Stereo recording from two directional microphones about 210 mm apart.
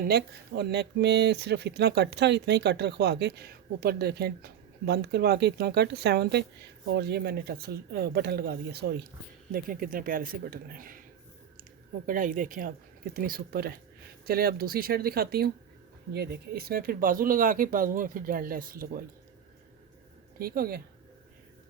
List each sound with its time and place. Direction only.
0.0 s speech: 50° right (ahead or behind)
12.0 s speech: 40° right (ahead or behind)
20.4 s speech: 45° right (ahead or behind)